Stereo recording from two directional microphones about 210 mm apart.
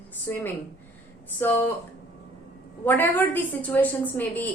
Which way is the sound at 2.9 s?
10° left (ahead or behind).